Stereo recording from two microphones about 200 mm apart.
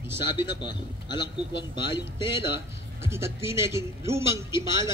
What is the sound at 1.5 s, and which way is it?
Speech, 60° left (ahead or behind).